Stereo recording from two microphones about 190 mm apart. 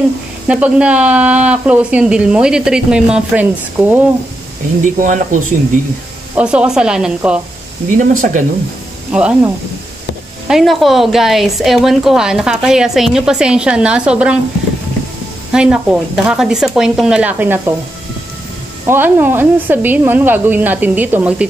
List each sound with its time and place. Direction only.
0.5 s speech: 5° right (ahead or behind)
4.8 s speech: 40° right (ahead or behind)
6.3 s a woman's voice: 5° right (ahead or behind)
8.0 s speech: 45° right (ahead or behind)
9.1 s a woman's voice: 5° right (ahead or behind)
10.5 s a woman's voice: centre (ahead or behind)
15.5 s a woman's voice: 5° right (ahead or behind)
18.9 s speech: 10° right (ahead or behind)